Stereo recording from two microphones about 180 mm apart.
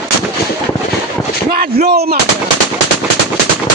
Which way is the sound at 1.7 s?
60° right (ahead or behind).